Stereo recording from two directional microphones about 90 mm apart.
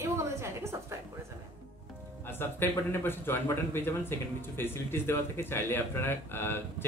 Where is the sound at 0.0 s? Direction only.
30° right (ahead or behind).